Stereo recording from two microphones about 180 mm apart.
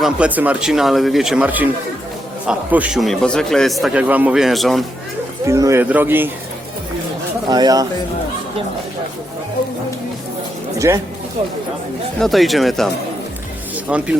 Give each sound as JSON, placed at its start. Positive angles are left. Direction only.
{"t": 0.0, "sound": "a man's voice", "side_deg": -5}
{"t": 5.5, "sound": "speech", "side_deg": -15}
{"t": 7.5, "sound": "speech", "side_deg": -20}
{"t": 10.8, "sound": "speech", "side_deg": -15}
{"t": 12.2, "sound": "a man's voice", "side_deg": 0}
{"t": 13.9, "sound": "speech", "side_deg": -5}